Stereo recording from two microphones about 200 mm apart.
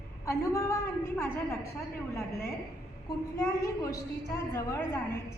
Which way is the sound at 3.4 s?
15° left (ahead or behind).